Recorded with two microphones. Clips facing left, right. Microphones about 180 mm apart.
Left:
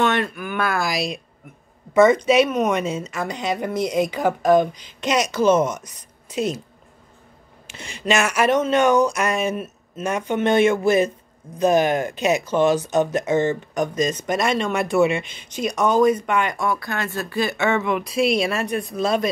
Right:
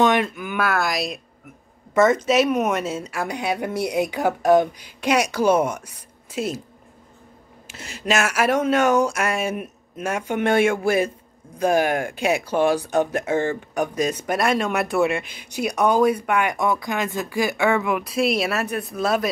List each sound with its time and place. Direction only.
0.0 s a sound: 15° right (ahead or behind)
0.6 s speech: centre (ahead or behind)
7.6 s speech: 5° right (ahead or behind)